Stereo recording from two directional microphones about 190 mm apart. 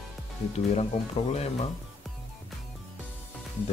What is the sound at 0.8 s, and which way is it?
Speech, 35° left (ahead or behind).